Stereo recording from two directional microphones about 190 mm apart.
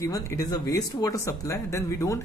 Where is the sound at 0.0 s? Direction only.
15° left (ahead or behind).